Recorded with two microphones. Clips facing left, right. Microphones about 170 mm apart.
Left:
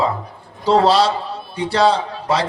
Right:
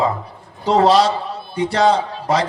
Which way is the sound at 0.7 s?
30° left (ahead or behind).